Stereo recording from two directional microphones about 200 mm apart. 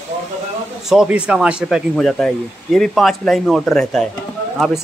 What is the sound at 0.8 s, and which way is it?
Speech, 5° right (ahead or behind).